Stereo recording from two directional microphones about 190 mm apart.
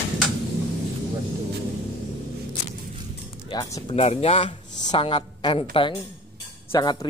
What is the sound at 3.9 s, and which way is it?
A woman's voice, 35° left (ahead or behind).